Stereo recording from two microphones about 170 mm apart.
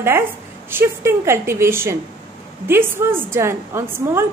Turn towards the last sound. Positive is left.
turn(degrees=-15)  # may be behind; listen again after turning